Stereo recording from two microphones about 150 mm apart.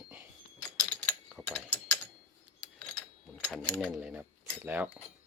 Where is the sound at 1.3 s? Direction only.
Centre (ahead or behind).